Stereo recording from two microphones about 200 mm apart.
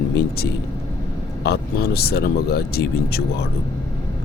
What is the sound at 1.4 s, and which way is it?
Speech, 55° left (ahead or behind).